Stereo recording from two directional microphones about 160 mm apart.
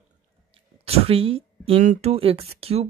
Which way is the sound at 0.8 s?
40° right (ahead or behind).